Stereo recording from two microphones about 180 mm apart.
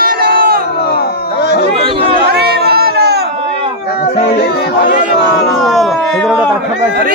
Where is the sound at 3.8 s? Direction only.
60° left (ahead or behind).